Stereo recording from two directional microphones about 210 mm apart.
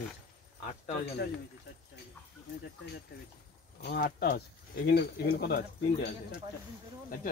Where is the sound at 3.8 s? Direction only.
50° left (ahead or behind).